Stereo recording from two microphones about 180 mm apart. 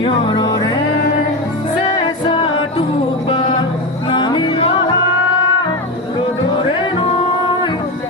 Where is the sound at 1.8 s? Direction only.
30° left (ahead or behind).